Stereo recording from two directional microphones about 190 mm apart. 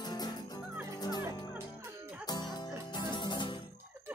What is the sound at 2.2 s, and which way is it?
Music, 20° left (ahead or behind).